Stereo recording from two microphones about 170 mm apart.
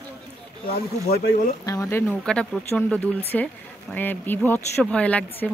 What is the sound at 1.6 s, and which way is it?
Speech, 20° left (ahead or behind).